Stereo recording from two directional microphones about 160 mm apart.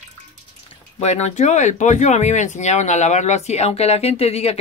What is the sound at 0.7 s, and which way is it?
Speech, 40° left (ahead or behind).